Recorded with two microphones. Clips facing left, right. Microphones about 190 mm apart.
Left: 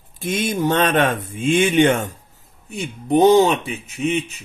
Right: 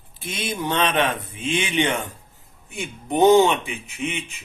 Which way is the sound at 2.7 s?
35° left (ahead or behind).